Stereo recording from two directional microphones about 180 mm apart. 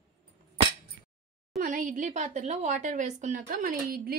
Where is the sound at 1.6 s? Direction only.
45° right (ahead or behind).